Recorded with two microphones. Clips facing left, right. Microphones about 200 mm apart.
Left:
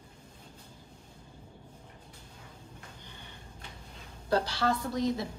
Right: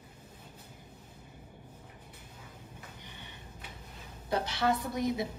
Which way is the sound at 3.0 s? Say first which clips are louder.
Right 1 dB; 20° right (ahead or behind).